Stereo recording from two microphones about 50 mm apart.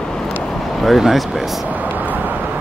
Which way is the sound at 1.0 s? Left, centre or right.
Centre.